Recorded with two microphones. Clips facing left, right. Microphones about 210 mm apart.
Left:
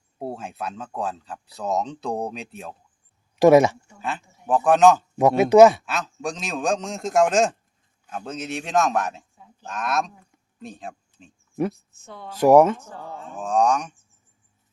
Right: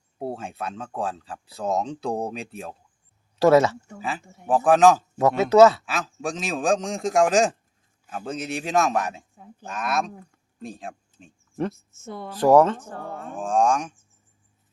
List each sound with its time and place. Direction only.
0.2 s speech: centre (ahead or behind)
3.3 s speech: 15° left (ahead or behind)
4.4 s speech: centre (ahead or behind)
5.1 s speech: 15° left (ahead or behind)
5.8 s speech: centre (ahead or behind)
11.9 s speech: 45° right (ahead or behind)
12.4 s speech: 10° left (ahead or behind)
13.0 s speech: 55° right (ahead or behind)
13.3 s speech: centre (ahead or behind)